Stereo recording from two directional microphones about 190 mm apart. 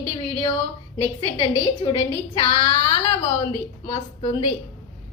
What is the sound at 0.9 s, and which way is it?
A woman's voice, 25° left (ahead or behind).